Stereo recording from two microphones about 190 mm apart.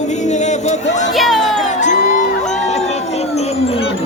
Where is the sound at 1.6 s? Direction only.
40° left (ahead or behind).